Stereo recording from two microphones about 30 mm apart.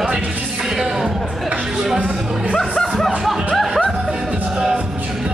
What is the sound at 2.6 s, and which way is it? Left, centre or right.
Music, centre.